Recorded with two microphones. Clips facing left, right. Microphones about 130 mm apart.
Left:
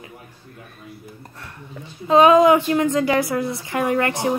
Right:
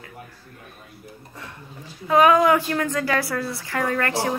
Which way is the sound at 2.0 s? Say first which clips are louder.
Left 4 dB; 25° left (ahead or behind).